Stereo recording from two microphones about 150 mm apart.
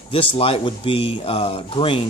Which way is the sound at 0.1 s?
40° left (ahead or behind).